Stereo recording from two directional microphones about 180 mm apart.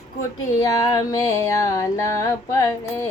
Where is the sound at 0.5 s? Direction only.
20° left (ahead or behind).